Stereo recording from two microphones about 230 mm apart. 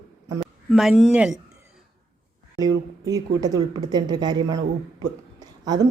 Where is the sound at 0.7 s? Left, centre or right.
Centre.